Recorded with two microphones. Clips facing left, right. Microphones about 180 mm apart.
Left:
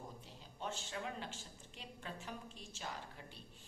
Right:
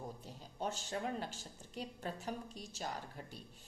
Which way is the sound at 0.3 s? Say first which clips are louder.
Right 4 dB; 40° right (ahead or behind).